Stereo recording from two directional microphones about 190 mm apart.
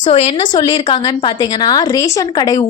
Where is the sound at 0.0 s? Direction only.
35° left (ahead or behind).